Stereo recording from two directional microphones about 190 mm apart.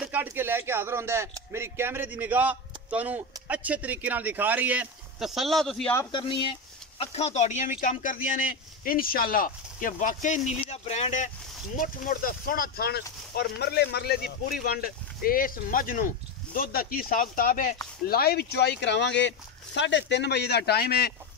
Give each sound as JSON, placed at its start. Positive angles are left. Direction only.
{"t": 0.0, "sound": "speech", "side_deg": -10}
{"t": 7.0, "sound": "speech", "side_deg": 35}